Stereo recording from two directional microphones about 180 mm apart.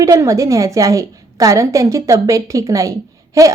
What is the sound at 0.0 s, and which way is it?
A woman's voice, 15° right (ahead or behind).